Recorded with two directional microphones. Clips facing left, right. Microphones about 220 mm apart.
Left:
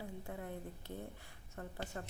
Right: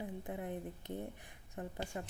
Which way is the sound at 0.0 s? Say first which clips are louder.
Right 4 dB; 20° right (ahead or behind).